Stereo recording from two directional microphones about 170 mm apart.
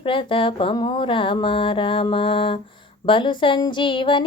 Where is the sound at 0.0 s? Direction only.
30° left (ahead or behind).